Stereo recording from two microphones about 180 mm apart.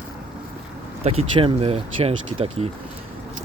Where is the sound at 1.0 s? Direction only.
30° right (ahead or behind).